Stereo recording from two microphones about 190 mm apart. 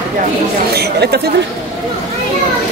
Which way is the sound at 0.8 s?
60° right (ahead or behind).